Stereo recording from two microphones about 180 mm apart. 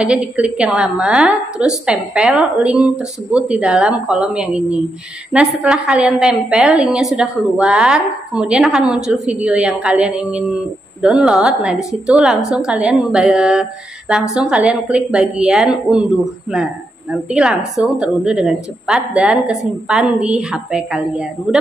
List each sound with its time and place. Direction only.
0.0 s a woman's voice: 5° right (ahead or behind)